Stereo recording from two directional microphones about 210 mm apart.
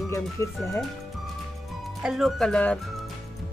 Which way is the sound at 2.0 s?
Centre (ahead or behind).